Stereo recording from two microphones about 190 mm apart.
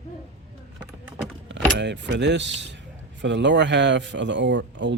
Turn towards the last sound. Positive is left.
turn(degrees=-70)  # may be behind; listen again after turning